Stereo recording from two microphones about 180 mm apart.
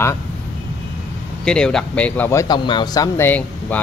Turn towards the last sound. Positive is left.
turn(degrees=10)  # may be behind; listen again after turning